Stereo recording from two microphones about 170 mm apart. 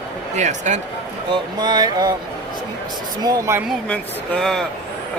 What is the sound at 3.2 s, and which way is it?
Speech, 20° right (ahead or behind).